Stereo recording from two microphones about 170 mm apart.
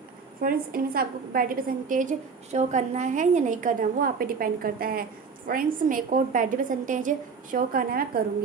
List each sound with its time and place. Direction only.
0.4 s a woman's voice: 60° right (ahead or behind)